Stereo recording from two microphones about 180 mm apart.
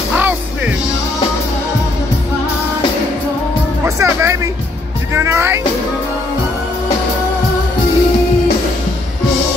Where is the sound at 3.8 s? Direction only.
15° right (ahead or behind).